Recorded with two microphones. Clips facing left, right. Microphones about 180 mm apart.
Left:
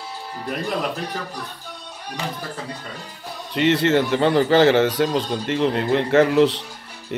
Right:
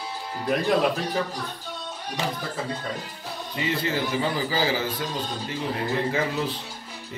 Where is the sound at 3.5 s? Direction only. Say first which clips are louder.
Left 10 dB; 75° left (ahead or behind).